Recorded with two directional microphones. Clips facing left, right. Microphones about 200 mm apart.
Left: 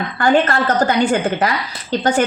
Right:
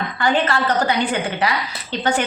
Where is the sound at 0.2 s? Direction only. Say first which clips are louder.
Left 4 dB; 45° left (ahead or behind).